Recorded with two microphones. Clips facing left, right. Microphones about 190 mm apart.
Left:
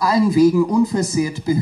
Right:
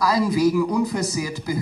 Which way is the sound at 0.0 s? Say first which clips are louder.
Left 5 dB; 25° left (ahead or behind).